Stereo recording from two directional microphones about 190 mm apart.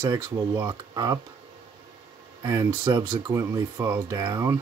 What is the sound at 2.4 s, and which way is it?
Speech, 15° right (ahead or behind).